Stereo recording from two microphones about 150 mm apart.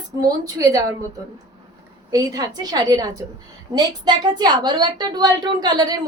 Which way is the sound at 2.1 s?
25° right (ahead or behind).